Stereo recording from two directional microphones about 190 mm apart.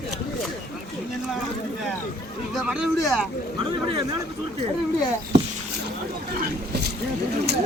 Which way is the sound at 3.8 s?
25° right (ahead or behind).